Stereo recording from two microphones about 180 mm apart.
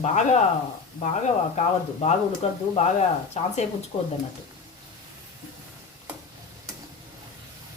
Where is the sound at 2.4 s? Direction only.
35° left (ahead or behind).